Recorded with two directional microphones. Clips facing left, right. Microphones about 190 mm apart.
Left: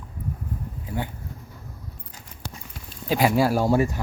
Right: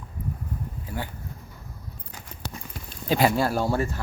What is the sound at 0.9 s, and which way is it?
Speech, 20° left (ahead or behind).